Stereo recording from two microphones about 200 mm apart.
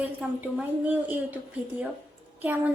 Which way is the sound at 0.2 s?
5° right (ahead or behind).